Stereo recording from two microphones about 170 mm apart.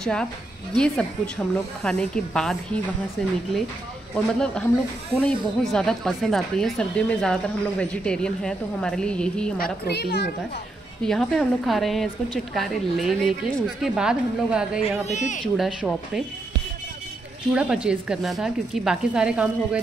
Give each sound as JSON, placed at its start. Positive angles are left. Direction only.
{"t": 0.0, "sound": "a woman's voice", "side_deg": 5}
{"t": 9.6, "sound": "a child's voice", "side_deg": 70}
{"t": 11.1, "sound": "a woman's voice", "side_deg": 0}
{"t": 15.0, "sound": "speech", "side_deg": 45}
{"t": 15.4, "sound": "a woman's voice", "side_deg": 0}
{"t": 17.6, "sound": "a woman's voice", "side_deg": -5}